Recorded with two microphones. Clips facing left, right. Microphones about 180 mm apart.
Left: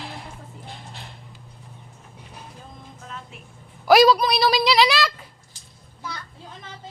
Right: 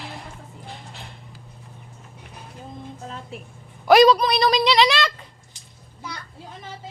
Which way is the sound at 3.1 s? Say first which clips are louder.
Right 1 dB; 35° right (ahead or behind).